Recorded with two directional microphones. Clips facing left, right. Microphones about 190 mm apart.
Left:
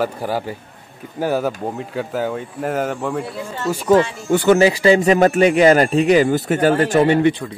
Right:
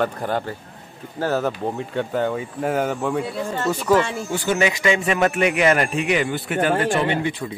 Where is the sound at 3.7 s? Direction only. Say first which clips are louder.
Left 5 dB; 20° left (ahead or behind).